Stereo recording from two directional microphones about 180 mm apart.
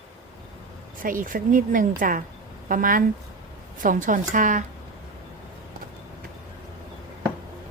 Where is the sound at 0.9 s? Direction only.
50° right (ahead or behind).